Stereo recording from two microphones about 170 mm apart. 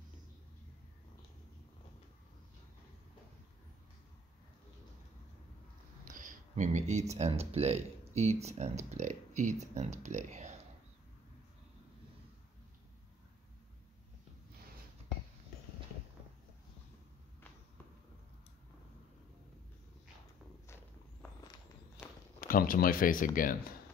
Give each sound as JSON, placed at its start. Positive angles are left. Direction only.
{"t": 6.0, "sound": "speech", "side_deg": -50}
{"t": 22.4, "sound": "speech", "side_deg": 55}